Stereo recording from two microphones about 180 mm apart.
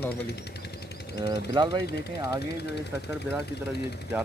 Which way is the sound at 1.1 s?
25° right (ahead or behind).